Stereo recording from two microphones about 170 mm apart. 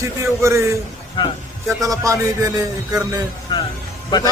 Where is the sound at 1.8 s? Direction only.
20° right (ahead or behind).